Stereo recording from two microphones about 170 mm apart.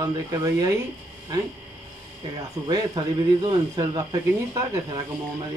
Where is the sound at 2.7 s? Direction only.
25° right (ahead or behind).